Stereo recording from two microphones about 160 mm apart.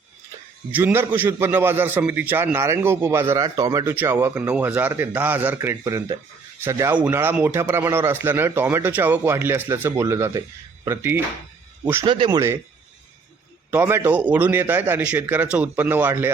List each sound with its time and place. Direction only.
0.7 s a man's voice: 10° right (ahead or behind)
12.0 s speech: 30° right (ahead or behind)
13.7 s a man's voice: 15° right (ahead or behind)